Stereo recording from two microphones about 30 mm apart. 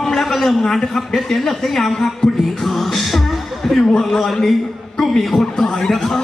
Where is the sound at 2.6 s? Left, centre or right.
Centre.